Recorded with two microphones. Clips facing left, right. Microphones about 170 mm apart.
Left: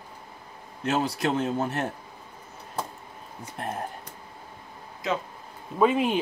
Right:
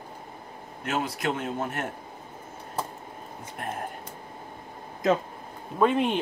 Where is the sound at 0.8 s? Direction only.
30° left (ahead or behind).